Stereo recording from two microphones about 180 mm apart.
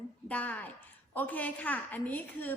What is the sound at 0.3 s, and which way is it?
A woman's voice, 10° left (ahead or behind).